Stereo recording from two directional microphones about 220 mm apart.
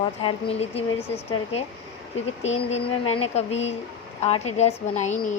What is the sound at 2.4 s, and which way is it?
A woman's voice, 30° left (ahead or behind).